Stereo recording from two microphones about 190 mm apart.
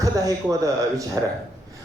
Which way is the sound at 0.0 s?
15° right (ahead or behind).